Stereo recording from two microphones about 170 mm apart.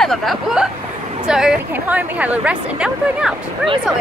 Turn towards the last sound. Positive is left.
turn(degrees=-5)  # may be behind; listen again after turning